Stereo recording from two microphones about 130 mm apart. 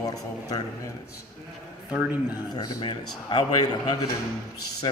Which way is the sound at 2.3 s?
30° left (ahead or behind).